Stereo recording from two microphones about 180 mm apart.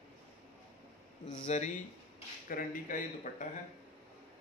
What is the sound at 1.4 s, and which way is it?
Speech, 45° left (ahead or behind).